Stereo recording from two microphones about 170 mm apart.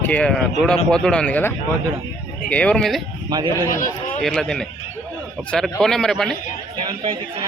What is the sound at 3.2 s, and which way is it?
Speech, 25° right (ahead or behind).